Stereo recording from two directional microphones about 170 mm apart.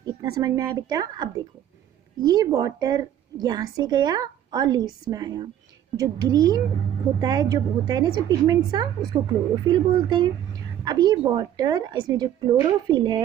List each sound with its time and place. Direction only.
0.0 s a woman's voice: 20° right (ahead or behind)